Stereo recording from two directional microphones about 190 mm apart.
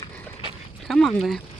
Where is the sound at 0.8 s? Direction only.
Centre (ahead or behind).